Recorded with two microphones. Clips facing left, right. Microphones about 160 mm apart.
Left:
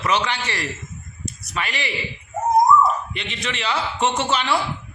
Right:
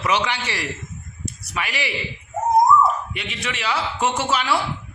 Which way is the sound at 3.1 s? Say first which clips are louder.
Left 1 dB; 10° right (ahead or behind).